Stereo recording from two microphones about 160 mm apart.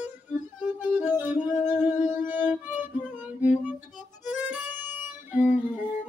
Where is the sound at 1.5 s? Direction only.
50° left (ahead or behind).